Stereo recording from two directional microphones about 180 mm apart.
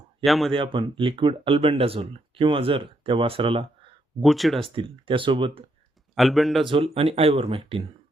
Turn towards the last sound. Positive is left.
turn(degrees=-30)  # may be behind; listen again after turning